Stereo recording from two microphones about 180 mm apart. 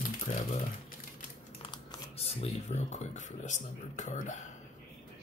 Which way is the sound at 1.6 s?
35° left (ahead or behind).